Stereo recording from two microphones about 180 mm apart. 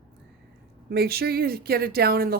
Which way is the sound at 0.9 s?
60° right (ahead or behind).